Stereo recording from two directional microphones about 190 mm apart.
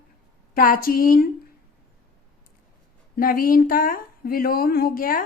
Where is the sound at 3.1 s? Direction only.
50° left (ahead or behind).